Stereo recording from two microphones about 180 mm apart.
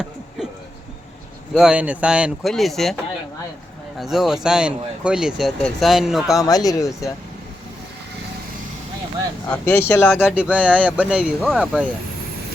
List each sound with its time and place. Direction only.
1.5 s speech: 5° right (ahead or behind)
6.7 s speech: 20° left (ahead or behind)
9.5 s speech: 10° left (ahead or behind)
10.2 s speech: 5° right (ahead or behind)